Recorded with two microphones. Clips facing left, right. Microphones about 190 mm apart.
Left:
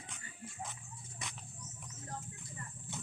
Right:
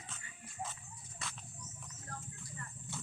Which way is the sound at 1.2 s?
20° left (ahead or behind).